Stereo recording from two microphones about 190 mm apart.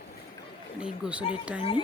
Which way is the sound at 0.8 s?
5° right (ahead or behind).